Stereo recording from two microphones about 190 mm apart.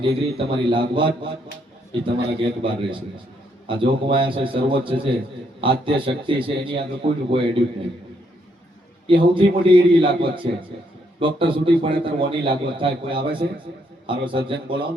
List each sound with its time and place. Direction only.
0.0 s a man's voice: 25° right (ahead or behind)
2.4 s a man's voice: 25° right (ahead or behind)
9.0 s a man's voice: 25° right (ahead or behind)